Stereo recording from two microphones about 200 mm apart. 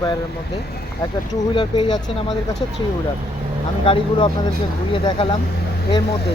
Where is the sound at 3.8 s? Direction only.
25° left (ahead or behind).